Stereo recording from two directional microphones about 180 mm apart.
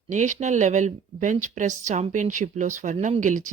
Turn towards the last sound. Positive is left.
turn(degrees=-45)  # may be behind; listen again after turning